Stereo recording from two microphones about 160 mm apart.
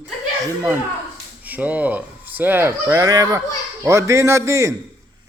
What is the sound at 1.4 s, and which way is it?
A man's voice, 10° right (ahead or behind).